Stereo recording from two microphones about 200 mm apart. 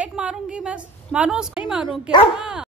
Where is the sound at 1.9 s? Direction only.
25° left (ahead or behind).